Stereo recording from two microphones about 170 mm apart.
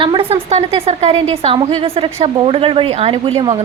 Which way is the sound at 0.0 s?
30° right (ahead or behind).